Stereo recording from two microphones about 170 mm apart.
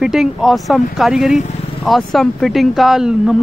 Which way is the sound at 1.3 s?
45° left (ahead or behind).